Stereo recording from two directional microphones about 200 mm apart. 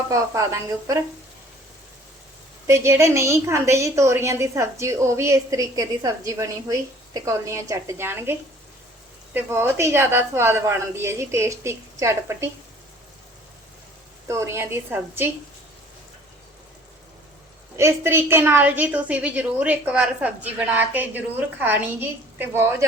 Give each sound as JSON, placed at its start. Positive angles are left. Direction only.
{"t": 0.1, "sound": "a woman's voice", "side_deg": -15}
{"t": 2.6, "sound": "a woman's voice", "side_deg": -15}
{"t": 14.3, "sound": "a woman's voice", "side_deg": -15}
{"t": 17.7, "sound": "a woman's voice", "side_deg": -15}